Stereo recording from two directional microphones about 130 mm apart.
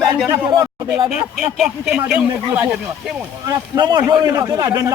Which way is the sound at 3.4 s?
30° right (ahead or behind).